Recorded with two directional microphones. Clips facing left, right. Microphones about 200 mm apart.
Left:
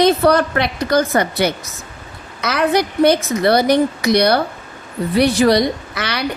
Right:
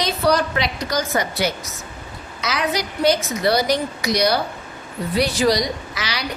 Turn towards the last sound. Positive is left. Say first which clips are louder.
# left 5 dB
turn(degrees=55)  # may be behind; listen again after turning